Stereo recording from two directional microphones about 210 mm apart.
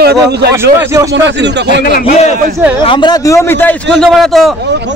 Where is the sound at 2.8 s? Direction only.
20° left (ahead or behind).